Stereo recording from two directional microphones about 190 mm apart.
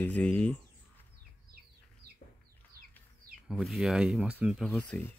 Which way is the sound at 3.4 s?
Centre (ahead or behind).